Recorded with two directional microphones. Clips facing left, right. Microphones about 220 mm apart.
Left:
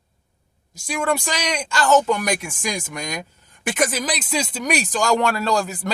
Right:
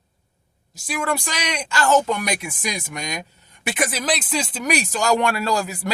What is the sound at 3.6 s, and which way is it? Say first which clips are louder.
Speech: left 2 dB; 45° left (ahead or behind).